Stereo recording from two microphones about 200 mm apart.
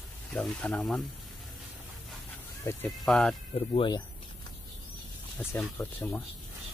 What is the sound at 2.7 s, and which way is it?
Speech, 10° left (ahead or behind).